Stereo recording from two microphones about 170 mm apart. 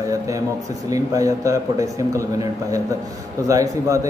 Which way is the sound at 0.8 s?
20° right (ahead or behind).